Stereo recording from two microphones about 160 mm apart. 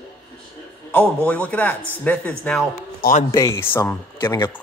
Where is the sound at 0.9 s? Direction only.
10° left (ahead or behind).